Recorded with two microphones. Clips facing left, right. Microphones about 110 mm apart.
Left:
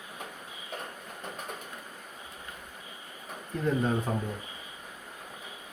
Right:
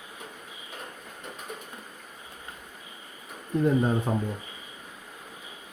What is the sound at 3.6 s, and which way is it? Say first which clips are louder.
Speech: right 3 dB; 20° right (ahead or behind).